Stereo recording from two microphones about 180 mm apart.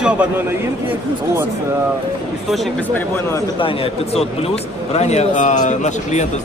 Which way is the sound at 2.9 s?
15° left (ahead or behind).